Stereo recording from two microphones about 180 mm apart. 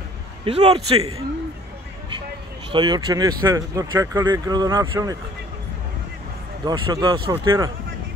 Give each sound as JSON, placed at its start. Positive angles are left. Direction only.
{"t": 0.5, "sound": "a man's voice", "side_deg": -35}
{"t": 2.7, "sound": "speech", "side_deg": -25}
{"t": 6.6, "sound": "speech", "side_deg": -25}